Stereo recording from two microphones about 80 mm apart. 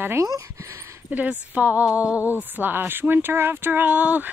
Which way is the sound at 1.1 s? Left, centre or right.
Right.